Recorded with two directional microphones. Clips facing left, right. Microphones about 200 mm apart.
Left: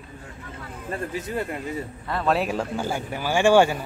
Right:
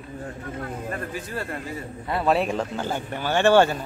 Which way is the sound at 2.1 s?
10° right (ahead or behind).